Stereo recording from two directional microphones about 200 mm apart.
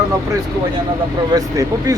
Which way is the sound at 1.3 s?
20° right (ahead or behind).